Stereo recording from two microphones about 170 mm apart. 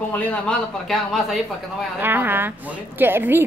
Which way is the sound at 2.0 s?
10° right (ahead or behind).